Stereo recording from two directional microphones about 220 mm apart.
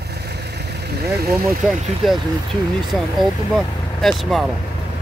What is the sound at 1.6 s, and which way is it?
Speech, centre (ahead or behind).